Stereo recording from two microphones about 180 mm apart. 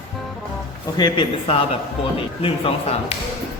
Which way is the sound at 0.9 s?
25° left (ahead or behind).